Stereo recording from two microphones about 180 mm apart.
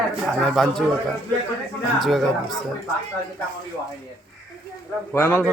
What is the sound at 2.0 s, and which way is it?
Speech, centre (ahead or behind).